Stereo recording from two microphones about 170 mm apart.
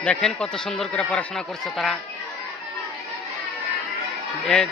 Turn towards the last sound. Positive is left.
turn(degrees=5)  # may be behind; listen again after turning